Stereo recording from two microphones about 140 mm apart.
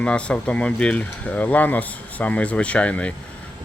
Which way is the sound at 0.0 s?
10° left (ahead or behind).